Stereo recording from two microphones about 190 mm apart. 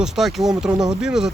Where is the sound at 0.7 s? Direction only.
20° right (ahead or behind).